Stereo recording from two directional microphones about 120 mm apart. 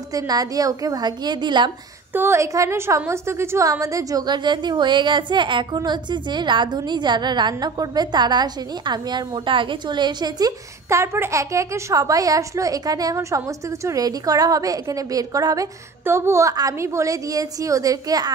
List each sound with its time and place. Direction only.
0.1 s a woman's voice: 30° right (ahead or behind)
2.1 s a woman's voice: 20° right (ahead or behind)